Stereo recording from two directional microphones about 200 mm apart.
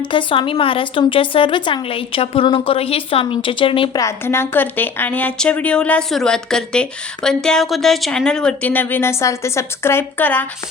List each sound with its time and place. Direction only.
0.1 s a woman's voice: 25° left (ahead or behind)
4.0 s a woman's voice: 10° left (ahead or behind)